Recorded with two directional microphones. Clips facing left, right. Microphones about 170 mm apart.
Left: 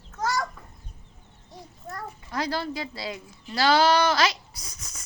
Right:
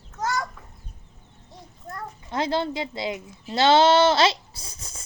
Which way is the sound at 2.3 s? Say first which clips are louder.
Right 4 dB; 25° right (ahead or behind).